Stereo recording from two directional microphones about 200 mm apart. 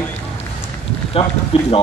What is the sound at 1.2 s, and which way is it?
Speech, 30° left (ahead or behind).